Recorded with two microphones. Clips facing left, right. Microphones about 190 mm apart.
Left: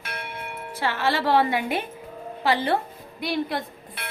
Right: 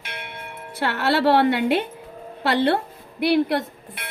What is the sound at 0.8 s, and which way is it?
A woman's voice, 65° right (ahead or behind).